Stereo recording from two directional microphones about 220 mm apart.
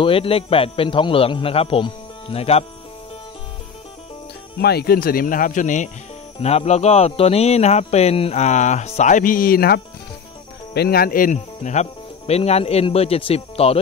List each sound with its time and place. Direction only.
0.0 s speech: 25° left (ahead or behind)
4.6 s speech: 45° left (ahead or behind); by 13.7 s 25° left (ahead or behind)